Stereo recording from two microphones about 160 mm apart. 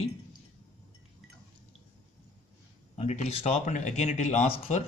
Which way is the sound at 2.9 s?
45° left (ahead or behind).